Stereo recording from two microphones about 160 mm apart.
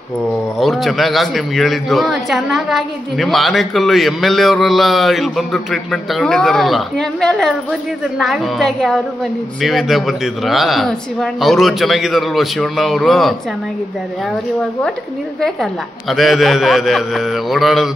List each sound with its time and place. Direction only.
0.6 s a man's voice: centre (ahead or behind)
15.4 s a man's voice: centre (ahead or behind)